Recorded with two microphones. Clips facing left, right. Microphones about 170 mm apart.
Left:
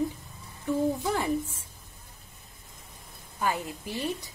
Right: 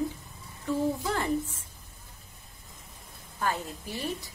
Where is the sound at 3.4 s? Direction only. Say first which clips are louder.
Left 1 dB; 15° left (ahead or behind).